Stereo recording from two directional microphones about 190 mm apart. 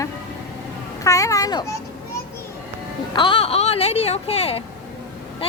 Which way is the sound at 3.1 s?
25° left (ahead or behind).